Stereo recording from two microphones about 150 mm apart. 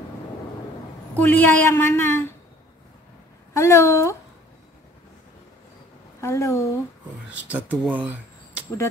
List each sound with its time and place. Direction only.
1.1 s a woman's voice: 10° left (ahead or behind)
3.5 s a woman's voice: 20° left (ahead or behind)
6.2 s speech: 20° left (ahead or behind)
7.4 s speech: 10° right (ahead or behind)